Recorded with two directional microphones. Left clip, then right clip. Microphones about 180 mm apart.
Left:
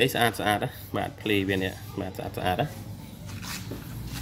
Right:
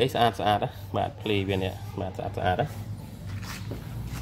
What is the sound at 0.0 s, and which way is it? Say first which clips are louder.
Speech: right 1 dB; 5° left (ahead or behind).